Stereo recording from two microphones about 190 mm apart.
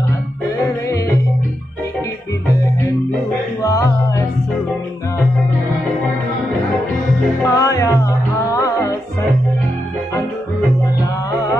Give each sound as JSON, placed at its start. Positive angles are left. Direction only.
{"t": 3.6, "sound": "music", "side_deg": 15}
{"t": 7.4, "sound": "music", "side_deg": 15}